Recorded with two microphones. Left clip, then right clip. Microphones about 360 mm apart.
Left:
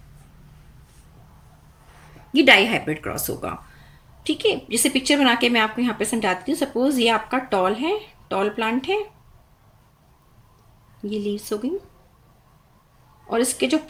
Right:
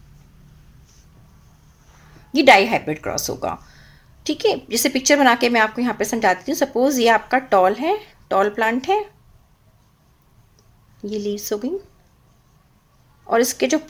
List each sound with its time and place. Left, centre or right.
2.3 s speech: centre
11.0 s speech: centre
13.3 s speech: centre